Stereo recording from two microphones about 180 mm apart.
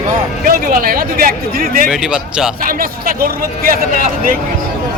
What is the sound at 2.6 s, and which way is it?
Speech, 50° right (ahead or behind).